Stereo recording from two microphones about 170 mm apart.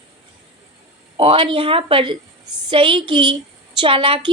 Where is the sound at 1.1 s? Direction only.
30° right (ahead or behind).